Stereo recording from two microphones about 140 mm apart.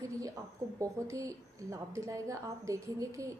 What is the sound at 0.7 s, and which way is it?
A woman's voice, 20° right (ahead or behind).